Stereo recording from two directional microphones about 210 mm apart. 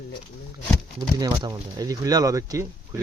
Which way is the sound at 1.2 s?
20° right (ahead or behind).